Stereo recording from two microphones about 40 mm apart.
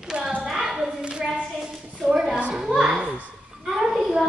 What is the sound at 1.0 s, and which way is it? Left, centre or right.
Clapping, right.